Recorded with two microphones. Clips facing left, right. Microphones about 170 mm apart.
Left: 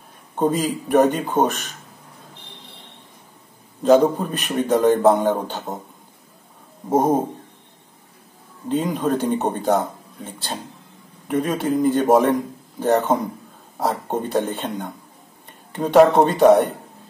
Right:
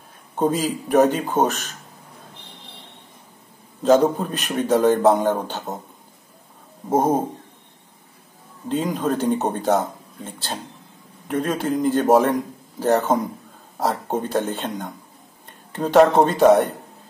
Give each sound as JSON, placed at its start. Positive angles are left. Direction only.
{"t": 0.4, "sound": "speech", "side_deg": 0}
{"t": 3.8, "sound": "speech", "side_deg": 0}
{"t": 6.9, "sound": "speech", "side_deg": 0}
{"t": 8.6, "sound": "a man's voice", "side_deg": 0}